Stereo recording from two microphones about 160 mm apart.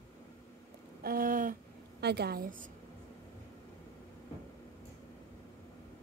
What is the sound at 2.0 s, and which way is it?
Speech, 90° right.